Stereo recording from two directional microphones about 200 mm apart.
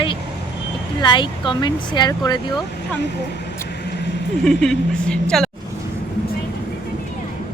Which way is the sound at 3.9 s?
55° left (ahead or behind).